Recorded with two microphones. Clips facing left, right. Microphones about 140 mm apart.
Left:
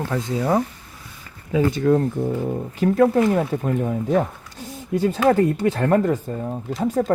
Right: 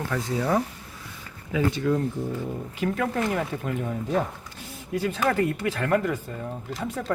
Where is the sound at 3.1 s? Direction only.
20° left (ahead or behind).